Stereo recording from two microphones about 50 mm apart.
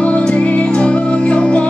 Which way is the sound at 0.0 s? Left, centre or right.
Left.